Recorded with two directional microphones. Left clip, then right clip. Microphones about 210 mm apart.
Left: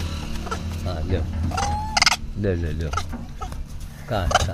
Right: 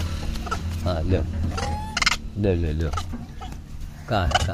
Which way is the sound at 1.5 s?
35° left (ahead or behind).